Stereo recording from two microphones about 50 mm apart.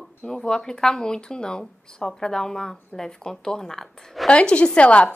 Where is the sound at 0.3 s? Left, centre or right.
Centre.